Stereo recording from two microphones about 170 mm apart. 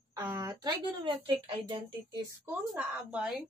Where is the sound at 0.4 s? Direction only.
25° right (ahead or behind).